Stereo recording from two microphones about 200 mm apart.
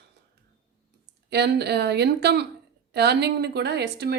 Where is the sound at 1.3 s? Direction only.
55° right (ahead or behind).